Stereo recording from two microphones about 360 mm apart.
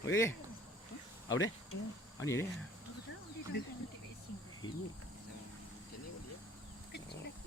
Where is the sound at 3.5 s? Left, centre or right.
Left.